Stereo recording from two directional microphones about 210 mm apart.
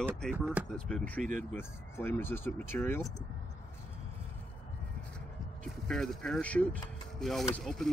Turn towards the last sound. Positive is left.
turn(degrees=0)  # may be behind; listen again after turning